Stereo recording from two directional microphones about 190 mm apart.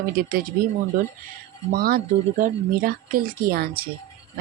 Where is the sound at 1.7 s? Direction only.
50° right (ahead or behind).